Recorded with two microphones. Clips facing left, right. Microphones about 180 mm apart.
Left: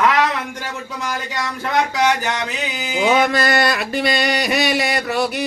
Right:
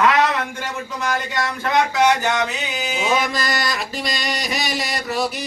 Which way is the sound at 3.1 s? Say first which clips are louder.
Left 6 dB; 60° left (ahead or behind).